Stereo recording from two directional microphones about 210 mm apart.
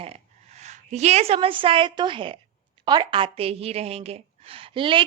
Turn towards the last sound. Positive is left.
turn(degrees=-25)  # may be behind; listen again after turning